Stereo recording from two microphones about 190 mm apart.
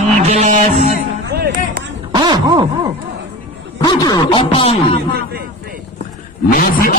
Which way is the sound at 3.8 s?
20° left (ahead or behind).